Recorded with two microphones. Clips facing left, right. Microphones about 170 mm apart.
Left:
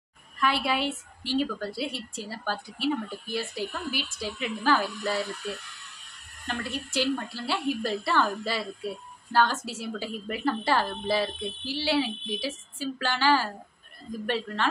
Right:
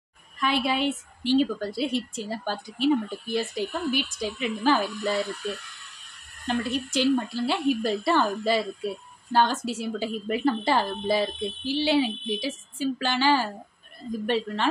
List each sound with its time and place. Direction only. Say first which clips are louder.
0.4 s a woman's voice: right 2 dB; 20° right (ahead or behind)
6.4 s a woman's voice: right 6 dB; 20° right (ahead or behind)